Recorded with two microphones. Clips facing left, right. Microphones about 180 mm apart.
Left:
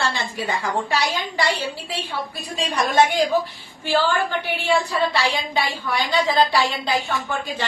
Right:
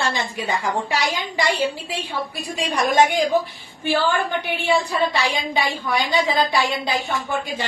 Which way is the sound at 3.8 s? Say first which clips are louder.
Even; 15° right (ahead or behind).